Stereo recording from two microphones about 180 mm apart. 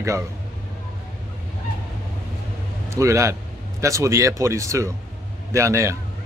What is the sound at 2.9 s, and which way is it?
Speech, 15° right (ahead or behind).